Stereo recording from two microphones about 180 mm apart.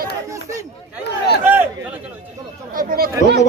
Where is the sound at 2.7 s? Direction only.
55° right (ahead or behind).